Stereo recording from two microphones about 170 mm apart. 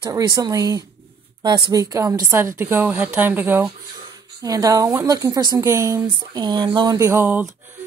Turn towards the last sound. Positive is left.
turn(degrees=-10)  # may be behind; listen again after turning